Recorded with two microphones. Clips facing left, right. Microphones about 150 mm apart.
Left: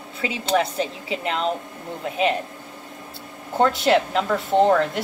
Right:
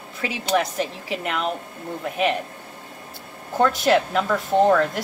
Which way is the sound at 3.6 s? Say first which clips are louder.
Even; 25° left (ahead or behind).